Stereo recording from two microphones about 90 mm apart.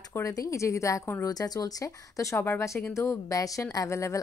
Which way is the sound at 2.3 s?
20° left (ahead or behind).